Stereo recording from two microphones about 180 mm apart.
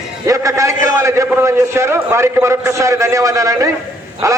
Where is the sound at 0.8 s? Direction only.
15° right (ahead or behind).